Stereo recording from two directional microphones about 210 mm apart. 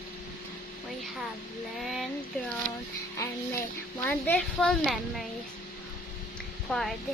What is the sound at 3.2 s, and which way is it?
Speech, 10° left (ahead or behind).